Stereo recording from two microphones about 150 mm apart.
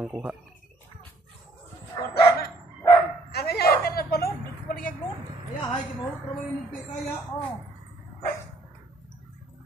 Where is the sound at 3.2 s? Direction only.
90° left.